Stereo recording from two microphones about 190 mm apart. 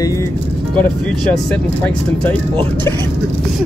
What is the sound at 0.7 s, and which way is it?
Speech, 5° left (ahead or behind).